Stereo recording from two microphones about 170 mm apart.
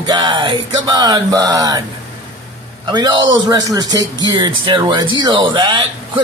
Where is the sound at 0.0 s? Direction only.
25° right (ahead or behind).